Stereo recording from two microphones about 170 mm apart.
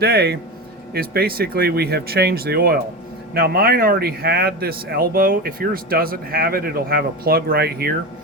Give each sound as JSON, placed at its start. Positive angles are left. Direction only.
{"t": 0.0, "sound": "a man's voice", "side_deg": -70}